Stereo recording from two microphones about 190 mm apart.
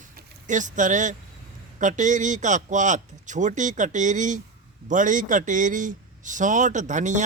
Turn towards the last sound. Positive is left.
turn(degrees=-40)  # may be behind; listen again after turning